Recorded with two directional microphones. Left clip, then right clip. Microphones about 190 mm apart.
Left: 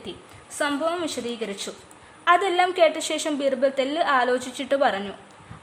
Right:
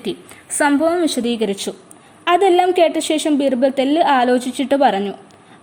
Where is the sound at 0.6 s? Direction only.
25° right (ahead or behind).